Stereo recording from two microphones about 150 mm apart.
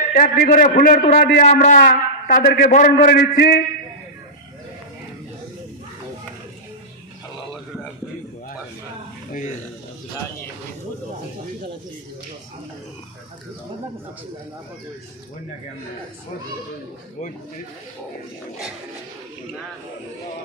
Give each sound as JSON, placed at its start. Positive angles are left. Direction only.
{"t": 0.1, "sound": "a man's voice", "side_deg": 80}
{"t": 1.4, "sound": "a man's voice", "side_deg": 55}